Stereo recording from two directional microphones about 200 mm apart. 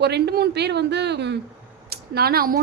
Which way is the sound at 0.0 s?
55° right (ahead or behind).